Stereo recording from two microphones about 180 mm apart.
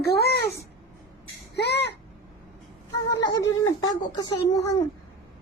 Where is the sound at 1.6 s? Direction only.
70° left (ahead or behind).